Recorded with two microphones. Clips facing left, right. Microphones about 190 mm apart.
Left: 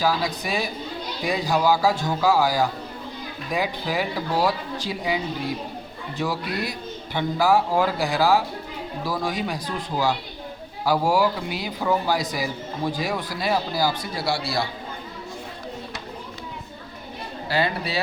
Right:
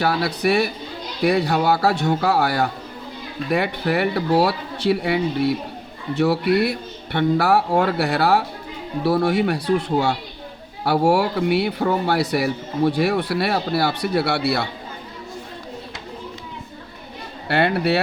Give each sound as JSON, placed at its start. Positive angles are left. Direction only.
{"t": 0.0, "sound": "a man's voice", "side_deg": -70}
{"t": 10.8, "sound": "a man's voice", "side_deg": -70}
{"t": 17.5, "sound": "a man's voice", "side_deg": -65}